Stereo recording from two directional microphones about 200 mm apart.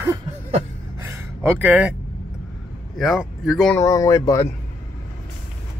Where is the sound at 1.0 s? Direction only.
15° right (ahead or behind).